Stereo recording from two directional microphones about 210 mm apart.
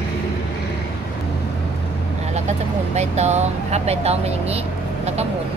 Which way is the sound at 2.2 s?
30° right (ahead or behind).